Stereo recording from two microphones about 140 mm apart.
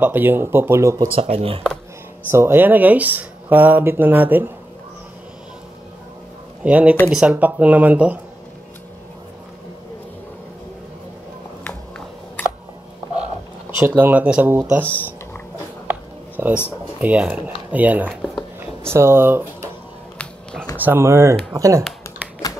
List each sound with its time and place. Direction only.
0.0 s speech: 15° right (ahead or behind)
1.3 s speech: 40° right (ahead or behind)
2.3 s speech: 15° right (ahead or behind)
6.6 s speech: 10° right (ahead or behind)
13.7 s speech: 15° right (ahead or behind)
15.9 s a sound: 10° right (ahead or behind)
17.0 s speech: 10° right (ahead or behind)
18.6 s a sound: 15° right (ahead or behind)
20.7 s speech: 15° right (ahead or behind)